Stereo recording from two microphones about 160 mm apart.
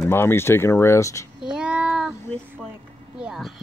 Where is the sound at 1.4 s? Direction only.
5° right (ahead or behind).